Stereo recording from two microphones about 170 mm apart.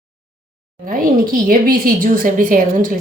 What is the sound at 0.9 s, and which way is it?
A woman's voice, 55° right (ahead or behind).